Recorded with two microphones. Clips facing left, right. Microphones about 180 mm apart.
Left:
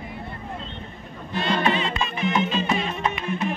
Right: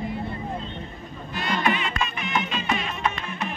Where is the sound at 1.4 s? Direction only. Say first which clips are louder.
Left 3 dB; 25° left (ahead or behind).